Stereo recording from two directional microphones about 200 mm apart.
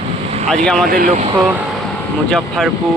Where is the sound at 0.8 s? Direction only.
45° right (ahead or behind).